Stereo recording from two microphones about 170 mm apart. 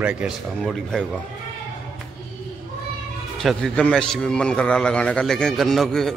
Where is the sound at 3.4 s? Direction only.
Centre (ahead or behind).